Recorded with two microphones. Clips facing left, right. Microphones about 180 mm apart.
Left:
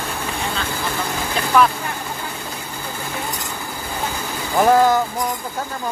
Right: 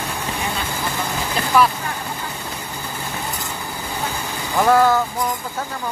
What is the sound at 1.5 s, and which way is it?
Speech, 5° right (ahead or behind).